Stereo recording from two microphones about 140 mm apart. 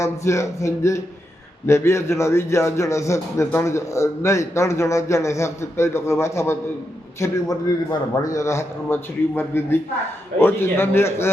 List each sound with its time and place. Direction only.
0.0 s a man's voice: 20° left (ahead or behind)